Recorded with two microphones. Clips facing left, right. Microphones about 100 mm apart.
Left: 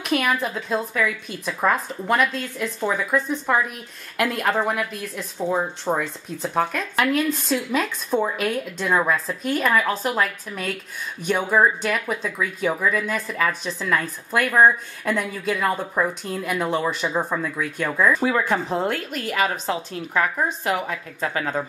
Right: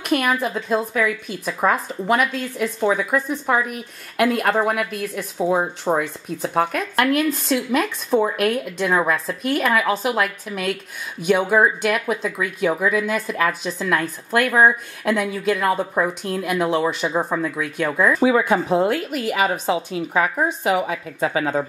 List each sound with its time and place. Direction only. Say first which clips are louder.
0.0 s speech: right 2 dB; centre (ahead or behind)
5.9 s speech: right 3 dB; 15° right (ahead or behind)
6.4 s speech: right 2 dB; 5° right (ahead or behind)